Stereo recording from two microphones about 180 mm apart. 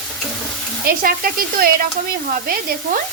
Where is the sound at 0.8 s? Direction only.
55° right (ahead or behind).